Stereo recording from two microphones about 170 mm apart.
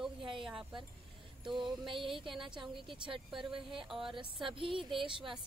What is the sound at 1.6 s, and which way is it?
Speech, 30° right (ahead or behind).